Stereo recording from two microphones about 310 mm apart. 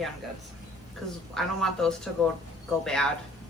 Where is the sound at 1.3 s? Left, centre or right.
Centre.